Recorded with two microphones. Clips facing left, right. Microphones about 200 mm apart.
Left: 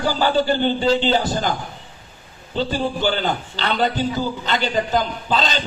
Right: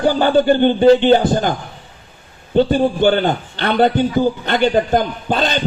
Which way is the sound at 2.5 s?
55° right (ahead or behind).